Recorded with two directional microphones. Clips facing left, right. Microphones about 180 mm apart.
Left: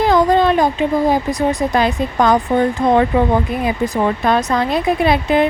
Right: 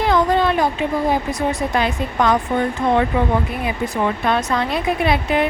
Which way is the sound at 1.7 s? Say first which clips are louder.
Left 4 dB; 35° left (ahead or behind).